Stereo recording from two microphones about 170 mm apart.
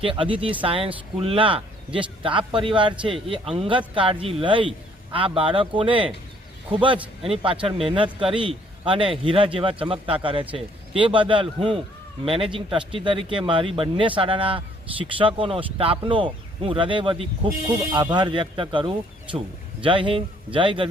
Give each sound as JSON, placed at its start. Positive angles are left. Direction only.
{"t": 0.0, "sound": "a man's voice", "side_deg": -30}